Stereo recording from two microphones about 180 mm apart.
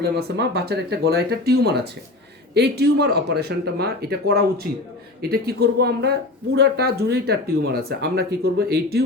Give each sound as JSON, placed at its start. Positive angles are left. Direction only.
{"t": 0.0, "sound": "speech", "side_deg": -65}